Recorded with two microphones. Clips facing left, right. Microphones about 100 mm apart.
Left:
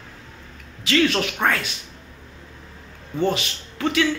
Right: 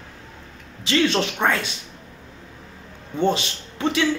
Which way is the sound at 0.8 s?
25° right (ahead or behind).